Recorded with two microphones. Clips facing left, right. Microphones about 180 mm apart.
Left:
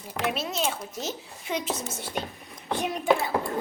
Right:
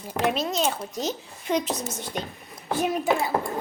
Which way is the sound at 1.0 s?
5° left (ahead or behind).